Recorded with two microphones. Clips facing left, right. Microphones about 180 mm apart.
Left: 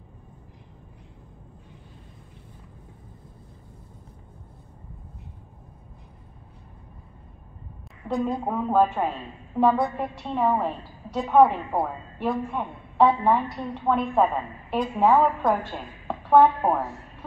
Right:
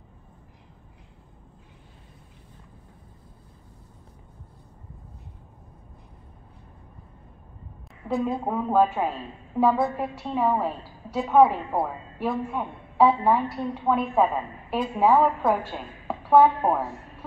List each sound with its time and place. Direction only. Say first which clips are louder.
8.1 s a woman's voice: even; 5° right (ahead or behind)